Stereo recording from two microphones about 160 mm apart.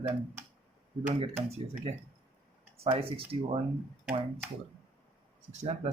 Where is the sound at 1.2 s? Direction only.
40° right (ahead or behind).